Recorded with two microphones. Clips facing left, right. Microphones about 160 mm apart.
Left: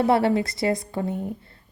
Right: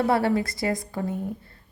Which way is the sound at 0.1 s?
25° left (ahead or behind).